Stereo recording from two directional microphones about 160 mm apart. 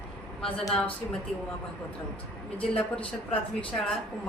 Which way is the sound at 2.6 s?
5° left (ahead or behind).